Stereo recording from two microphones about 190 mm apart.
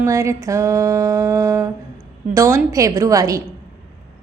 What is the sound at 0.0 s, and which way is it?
A woman's voice, 15° right (ahead or behind).